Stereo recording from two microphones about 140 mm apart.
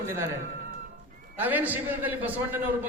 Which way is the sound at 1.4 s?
10° right (ahead or behind).